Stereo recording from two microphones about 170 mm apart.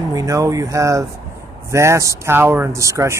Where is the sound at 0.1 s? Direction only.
20° right (ahead or behind).